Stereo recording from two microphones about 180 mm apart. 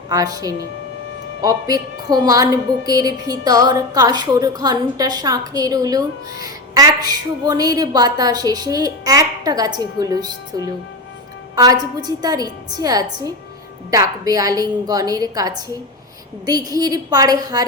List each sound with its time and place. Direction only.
0.1 s a woman's voice: 20° right (ahead or behind)